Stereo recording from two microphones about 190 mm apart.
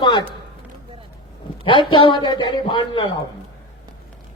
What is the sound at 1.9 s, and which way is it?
A man's voice, 25° left (ahead or behind).